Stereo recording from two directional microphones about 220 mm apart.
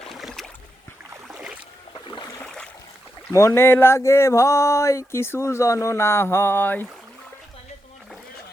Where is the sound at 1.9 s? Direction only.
20° left (ahead or behind).